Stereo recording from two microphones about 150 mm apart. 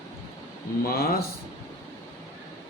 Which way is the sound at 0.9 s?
85° left.